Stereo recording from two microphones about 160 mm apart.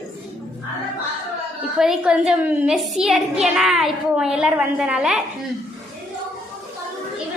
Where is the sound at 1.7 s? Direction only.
5° right (ahead or behind).